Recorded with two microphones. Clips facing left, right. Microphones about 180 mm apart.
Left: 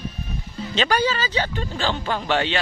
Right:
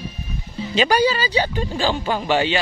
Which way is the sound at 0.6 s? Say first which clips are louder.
Right 4 dB; 10° right (ahead or behind).